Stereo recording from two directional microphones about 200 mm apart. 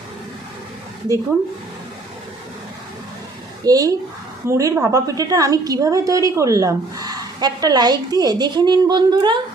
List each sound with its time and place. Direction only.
3.6 s a woman's voice: 20° right (ahead or behind)